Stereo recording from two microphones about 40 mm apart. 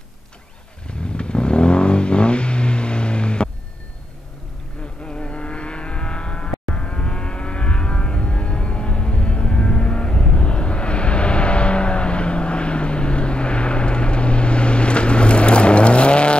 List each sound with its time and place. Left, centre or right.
0.8 s vehicle: left
5.0 s vehicle: left